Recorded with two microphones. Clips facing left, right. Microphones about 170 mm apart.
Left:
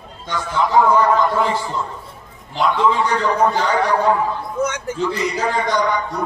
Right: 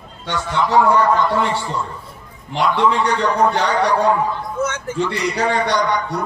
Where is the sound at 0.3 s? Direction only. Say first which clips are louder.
Right 1 dB; 75° right (ahead or behind).